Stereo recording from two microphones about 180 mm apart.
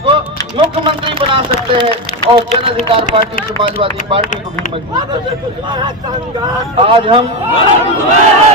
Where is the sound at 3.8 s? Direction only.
30° right (ahead or behind).